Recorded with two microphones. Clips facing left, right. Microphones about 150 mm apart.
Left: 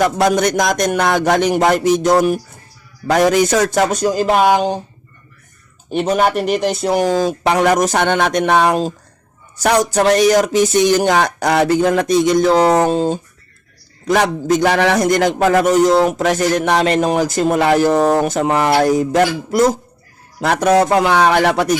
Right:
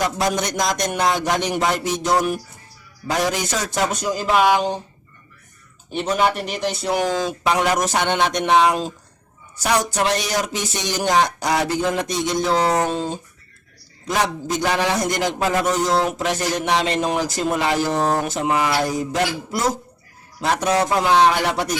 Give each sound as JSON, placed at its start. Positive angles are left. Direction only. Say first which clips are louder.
{"t": 0.0, "sound": "speech", "louder": "left 7 dB", "side_deg": 60}
{"t": 4.0, "sound": "speech", "louder": "left 3 dB", "side_deg": 40}
{"t": 5.9, "sound": "speech", "louder": "left 5 dB", "side_deg": 55}
{"t": 7.4, "sound": "speech", "louder": "left 5 dB", "side_deg": 55}
{"t": 14.1, "sound": "a man's voice", "louder": "left 7 dB", "side_deg": 55}
{"t": 20.4, "sound": "a man's voice", "louder": "left 6 dB", "side_deg": 60}